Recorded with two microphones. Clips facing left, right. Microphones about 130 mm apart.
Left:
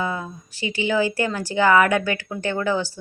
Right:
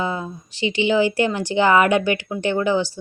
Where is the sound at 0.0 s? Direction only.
20° right (ahead or behind).